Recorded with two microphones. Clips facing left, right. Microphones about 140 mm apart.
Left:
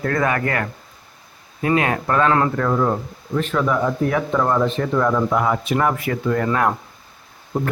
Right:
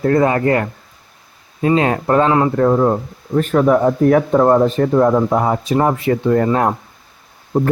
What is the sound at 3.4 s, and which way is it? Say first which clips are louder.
Speech: right 7 dB; 45° right (ahead or behind).